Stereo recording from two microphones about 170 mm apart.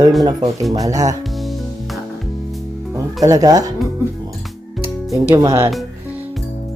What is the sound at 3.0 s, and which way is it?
Speech, 20° right (ahead or behind).